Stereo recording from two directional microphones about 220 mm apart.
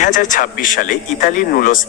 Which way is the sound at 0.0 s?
35° left (ahead or behind).